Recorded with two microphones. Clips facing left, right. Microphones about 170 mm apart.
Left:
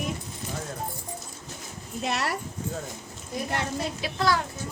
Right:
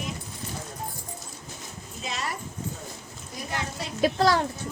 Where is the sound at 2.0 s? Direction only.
65° left (ahead or behind).